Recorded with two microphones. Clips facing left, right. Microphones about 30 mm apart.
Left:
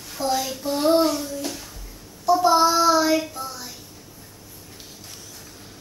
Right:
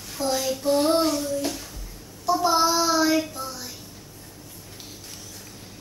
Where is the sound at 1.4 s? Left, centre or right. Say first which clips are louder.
Right 2 dB; centre.